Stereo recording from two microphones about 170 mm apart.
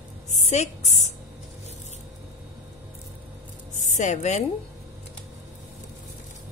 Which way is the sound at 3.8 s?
45° left (ahead or behind).